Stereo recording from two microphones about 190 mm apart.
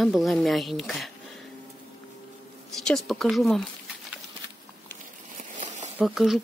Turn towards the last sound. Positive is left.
turn(degrees=0)  # may be behind; listen again after turning